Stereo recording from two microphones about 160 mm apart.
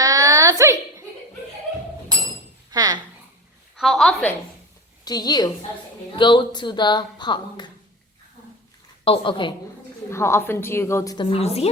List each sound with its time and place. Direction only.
0.0 s a sound: 20° right (ahead or behind)
2.6 s chink: 25° right (ahead or behind)
3.8 s a woman's voice: centre (ahead or behind)
5.0 s a woman's voice: 25° left (ahead or behind)
9.0 s a woman's voice: 30° left (ahead or behind)
10.1 s a woman's voice: 15° left (ahead or behind); by 11.7 s 40° left (ahead or behind)